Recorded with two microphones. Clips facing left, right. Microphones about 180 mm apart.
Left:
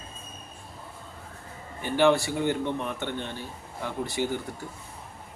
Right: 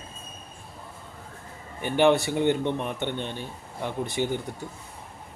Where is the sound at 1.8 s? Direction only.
20° right (ahead or behind).